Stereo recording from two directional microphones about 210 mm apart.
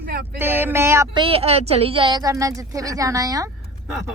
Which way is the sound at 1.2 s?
25° right (ahead or behind).